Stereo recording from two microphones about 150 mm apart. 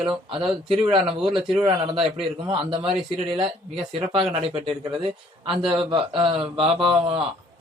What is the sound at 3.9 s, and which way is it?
Speech, 40° right (ahead or behind).